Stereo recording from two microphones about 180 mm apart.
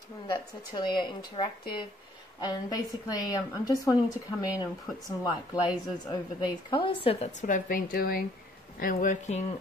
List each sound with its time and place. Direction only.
0.3 s speech: 25° left (ahead or behind)
7.4 s speech: 50° left (ahead or behind)